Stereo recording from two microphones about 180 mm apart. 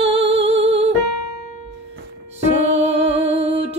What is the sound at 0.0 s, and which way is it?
Music, 35° right (ahead or behind).